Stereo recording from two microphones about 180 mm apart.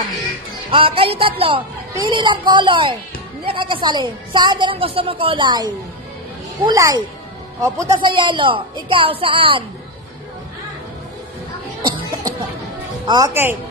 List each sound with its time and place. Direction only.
0.7 s a woman's voice: 30° right (ahead or behind)
11.8 s a sound: 25° right (ahead or behind)
13.0 s speech: 25° right (ahead or behind)
13.3 s speech: 10° right (ahead or behind)